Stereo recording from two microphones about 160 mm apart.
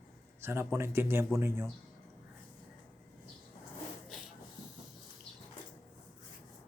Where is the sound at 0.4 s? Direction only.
15° right (ahead or behind).